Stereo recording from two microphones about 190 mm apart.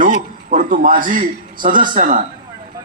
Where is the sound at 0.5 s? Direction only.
45° right (ahead or behind).